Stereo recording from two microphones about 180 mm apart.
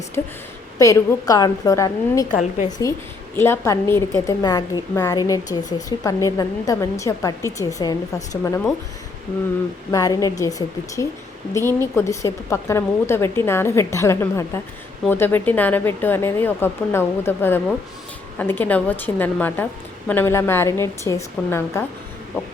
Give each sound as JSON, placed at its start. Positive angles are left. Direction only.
{"t": 0.2, "sound": "a woman's voice", "side_deg": 15}
{"t": 2.3, "sound": "a woman's voice", "side_deg": 40}
{"t": 3.3, "sound": "a woman's voice", "side_deg": 15}
{"t": 9.9, "sound": "a woman's voice", "side_deg": 20}
{"t": 11.5, "sound": "speech", "side_deg": 15}